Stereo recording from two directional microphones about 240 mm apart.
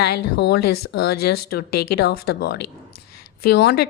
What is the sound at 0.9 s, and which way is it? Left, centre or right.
Speech, left.